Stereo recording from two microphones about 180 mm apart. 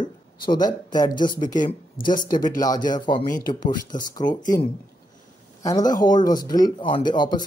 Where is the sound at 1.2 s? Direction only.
45° left (ahead or behind).